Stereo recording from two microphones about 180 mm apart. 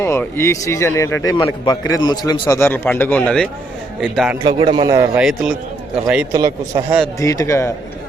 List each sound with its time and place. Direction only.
0.0 s a man's voice: 15° left (ahead or behind)
2.6 s a man's voice: 10° left (ahead or behind)
4.4 s a man's voice: 25° right (ahead or behind)
5.1 s speech: 5° right (ahead or behind)
6.3 s a man's voice: 20° right (ahead or behind)
7.2 s a man's voice: 15° left (ahead or behind)